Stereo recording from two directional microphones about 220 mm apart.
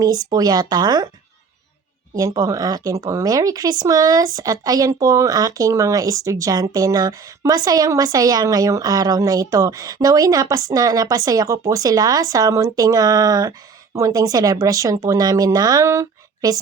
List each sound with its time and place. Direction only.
0.0 s speech: 15° right (ahead or behind)
2.1 s speech: 15° right (ahead or behind)